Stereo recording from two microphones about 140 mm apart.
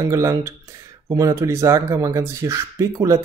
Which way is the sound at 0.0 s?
20° right (ahead or behind).